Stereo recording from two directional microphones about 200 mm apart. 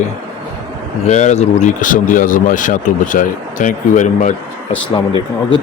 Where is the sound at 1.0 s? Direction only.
35° left (ahead or behind).